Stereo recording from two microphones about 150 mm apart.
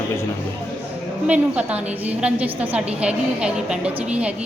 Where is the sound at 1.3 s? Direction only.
10° right (ahead or behind).